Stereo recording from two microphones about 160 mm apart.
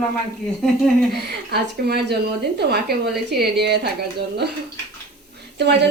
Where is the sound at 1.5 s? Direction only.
90° right.